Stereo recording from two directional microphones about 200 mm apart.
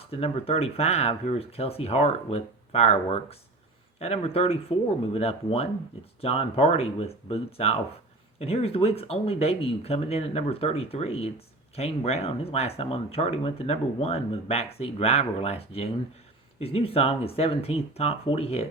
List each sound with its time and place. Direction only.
0.0 s speech: 30° left (ahead or behind)